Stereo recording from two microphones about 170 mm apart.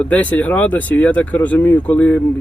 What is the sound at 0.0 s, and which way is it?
Speech, 10° left (ahead or behind).